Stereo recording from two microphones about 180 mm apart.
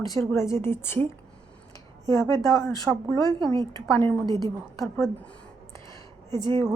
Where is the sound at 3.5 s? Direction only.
25° right (ahead or behind).